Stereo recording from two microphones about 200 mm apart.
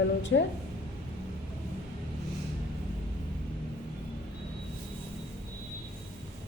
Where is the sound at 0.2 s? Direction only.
70° left (ahead or behind).